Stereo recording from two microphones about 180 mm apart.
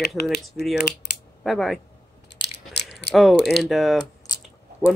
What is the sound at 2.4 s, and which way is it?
Biting, 70° left (ahead or behind).